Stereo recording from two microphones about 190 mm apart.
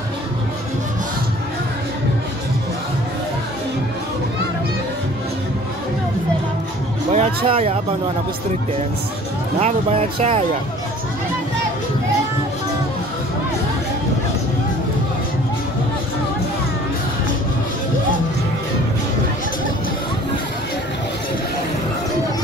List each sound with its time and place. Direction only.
7.1 s music: 35° right (ahead or behind)
9.6 s speech: 35° right (ahead or behind)